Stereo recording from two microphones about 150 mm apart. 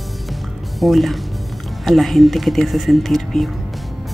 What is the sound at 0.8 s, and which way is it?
Speech, centre (ahead or behind).